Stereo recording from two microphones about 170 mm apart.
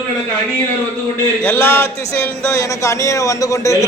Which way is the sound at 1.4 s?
15° left (ahead or behind).